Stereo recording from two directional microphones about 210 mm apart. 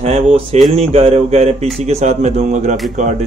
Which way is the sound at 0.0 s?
30° right (ahead or behind).